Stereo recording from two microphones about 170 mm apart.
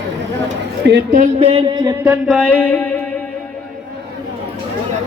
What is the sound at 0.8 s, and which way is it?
Speech, 75° right (ahead or behind).